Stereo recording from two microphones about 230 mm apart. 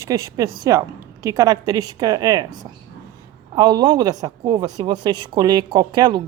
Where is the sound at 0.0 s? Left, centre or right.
Centre.